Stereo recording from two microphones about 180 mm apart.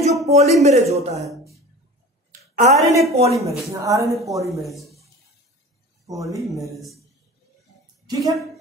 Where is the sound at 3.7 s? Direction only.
15° right (ahead or behind).